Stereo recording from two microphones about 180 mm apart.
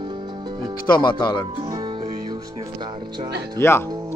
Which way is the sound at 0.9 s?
25° left (ahead or behind).